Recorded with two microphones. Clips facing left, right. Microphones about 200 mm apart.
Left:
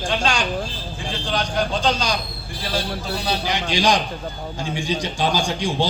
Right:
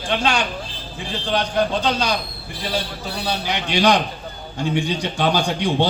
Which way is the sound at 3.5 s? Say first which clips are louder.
Right 3 dB; 60° right (ahead or behind).